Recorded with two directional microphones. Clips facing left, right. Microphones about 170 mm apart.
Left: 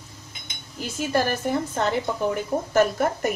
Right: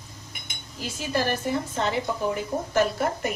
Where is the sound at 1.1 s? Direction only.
50° left (ahead or behind).